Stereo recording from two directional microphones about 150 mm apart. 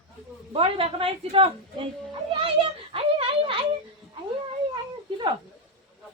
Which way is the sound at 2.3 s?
35° right (ahead or behind).